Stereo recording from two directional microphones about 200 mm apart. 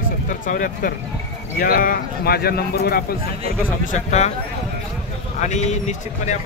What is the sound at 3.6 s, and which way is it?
Speech, 35° left (ahead or behind).